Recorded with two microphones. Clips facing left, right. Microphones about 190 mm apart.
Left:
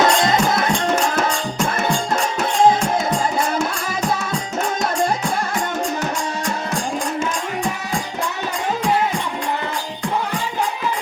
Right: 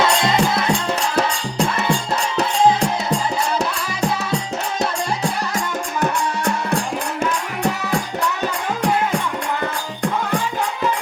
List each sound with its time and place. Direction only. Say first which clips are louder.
0.0 s music: left 1 dB; 45° left (ahead or behind)
6.0 s music: right 3 dB; 60° right (ahead or behind)